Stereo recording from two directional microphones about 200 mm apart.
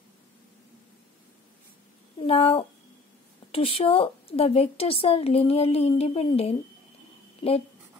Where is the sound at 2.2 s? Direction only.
30° left (ahead or behind).